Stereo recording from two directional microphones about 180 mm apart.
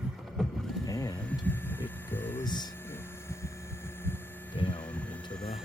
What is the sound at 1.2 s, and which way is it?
Hum, 10° left (ahead or behind).